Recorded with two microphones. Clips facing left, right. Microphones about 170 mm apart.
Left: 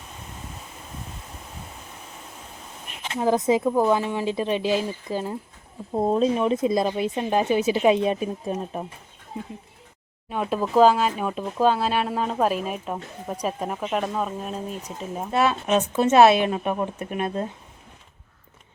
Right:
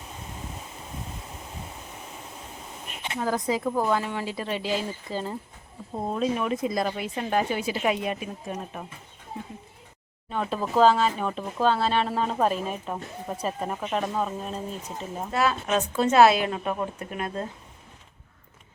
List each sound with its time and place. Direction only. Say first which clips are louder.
3.2 s speech: left 6 dB; 20° left (ahead or behind)
5.9 s speech: left 6 dB; 30° left (ahead or behind)
10.2 s speech: left 3 dB; 10° left (ahead or behind)
15.3 s speech: left 4 dB; 20° left (ahead or behind)